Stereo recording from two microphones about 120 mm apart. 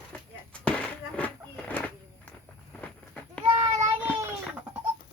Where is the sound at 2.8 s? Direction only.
10° left (ahead or behind).